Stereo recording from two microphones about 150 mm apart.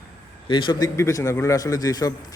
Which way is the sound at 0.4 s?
30° left (ahead or behind).